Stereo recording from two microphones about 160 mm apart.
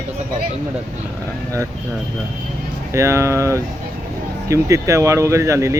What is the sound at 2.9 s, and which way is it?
Speech, 15° right (ahead or behind).